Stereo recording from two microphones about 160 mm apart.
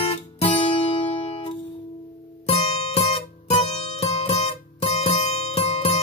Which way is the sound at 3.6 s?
40° left (ahead or behind).